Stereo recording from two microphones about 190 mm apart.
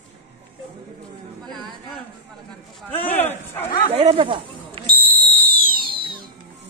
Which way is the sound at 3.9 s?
30° right (ahead or behind).